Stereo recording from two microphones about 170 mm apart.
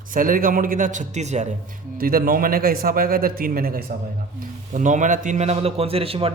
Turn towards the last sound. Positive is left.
turn(degrees=-35)  # may be behind; listen again after turning